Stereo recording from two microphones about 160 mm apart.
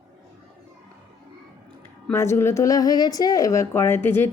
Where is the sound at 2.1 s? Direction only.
15° left (ahead or behind).